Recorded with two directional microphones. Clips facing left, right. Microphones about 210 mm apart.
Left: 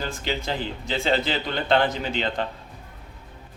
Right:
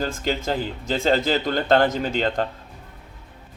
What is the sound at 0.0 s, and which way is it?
Speech, 45° right (ahead or behind).